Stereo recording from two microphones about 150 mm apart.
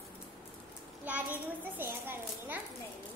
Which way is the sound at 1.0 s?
10° right (ahead or behind).